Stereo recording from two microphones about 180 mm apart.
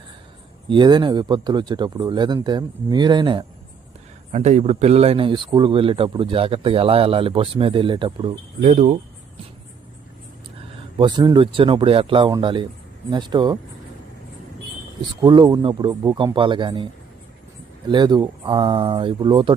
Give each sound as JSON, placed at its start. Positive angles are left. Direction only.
{"t": 0.7, "sound": "speech", "side_deg": -25}
{"t": 4.3, "sound": "speech", "side_deg": -40}
{"t": 8.6, "sound": "speech", "side_deg": -40}
{"t": 10.8, "sound": "speech", "side_deg": -25}
{"t": 15.2, "sound": "speech", "side_deg": -25}